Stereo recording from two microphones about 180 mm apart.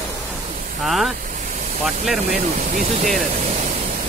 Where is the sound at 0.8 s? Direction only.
Centre (ahead or behind).